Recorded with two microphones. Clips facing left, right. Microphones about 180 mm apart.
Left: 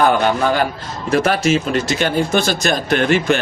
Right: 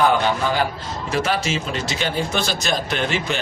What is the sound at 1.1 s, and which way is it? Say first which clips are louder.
Speech: left 7 dB; 50° left (ahead or behind).